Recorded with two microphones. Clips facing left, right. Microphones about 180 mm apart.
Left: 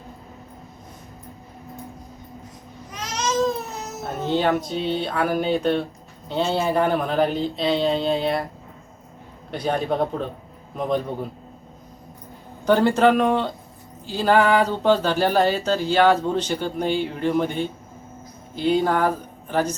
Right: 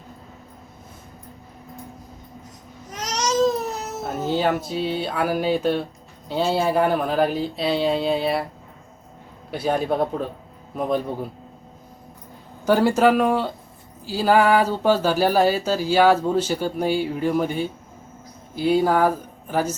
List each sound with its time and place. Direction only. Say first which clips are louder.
2.9 s baby cry: right 1 dB; 45° right (ahead or behind)
4.0 s speech: even; 5° right (ahead or behind)
9.5 s speech: right 1 dB; 5° right (ahead or behind)
12.6 s speech: even; 5° right (ahead or behind)